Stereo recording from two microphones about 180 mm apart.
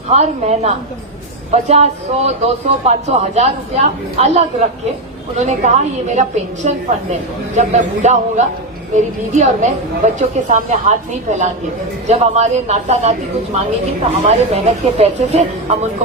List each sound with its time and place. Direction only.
0.1 s a man's voice: 40° right (ahead or behind)